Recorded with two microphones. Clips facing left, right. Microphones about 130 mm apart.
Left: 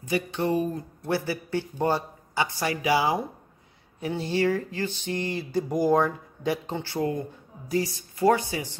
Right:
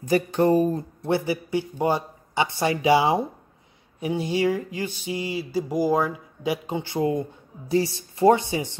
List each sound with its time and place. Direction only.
0.0 s speech: 45° right (ahead or behind)
1.0 s a man's voice: 20° right (ahead or behind)
4.0 s speech: 15° right (ahead or behind)